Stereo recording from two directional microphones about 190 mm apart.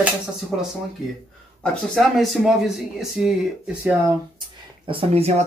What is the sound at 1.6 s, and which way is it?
Speech, centre (ahead or behind).